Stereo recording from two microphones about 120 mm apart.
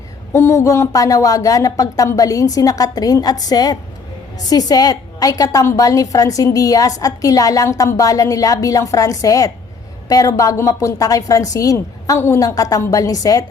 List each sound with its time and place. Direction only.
0.3 s a woman's voice: 25° left (ahead or behind)